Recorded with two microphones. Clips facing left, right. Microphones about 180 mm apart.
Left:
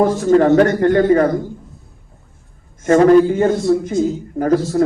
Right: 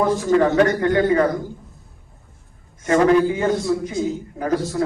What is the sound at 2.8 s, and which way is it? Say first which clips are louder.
A man's voice: left 5 dB; 45° left (ahead or behind).